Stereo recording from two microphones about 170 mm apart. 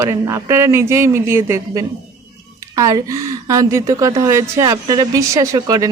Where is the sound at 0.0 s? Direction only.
15° right (ahead or behind).